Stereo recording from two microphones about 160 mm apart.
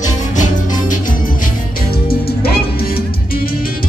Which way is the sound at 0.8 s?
55° left (ahead or behind).